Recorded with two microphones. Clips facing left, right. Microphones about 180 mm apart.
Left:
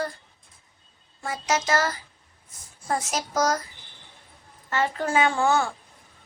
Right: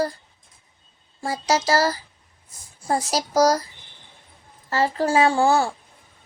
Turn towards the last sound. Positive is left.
turn(degrees=-35)  # may be behind; listen again after turning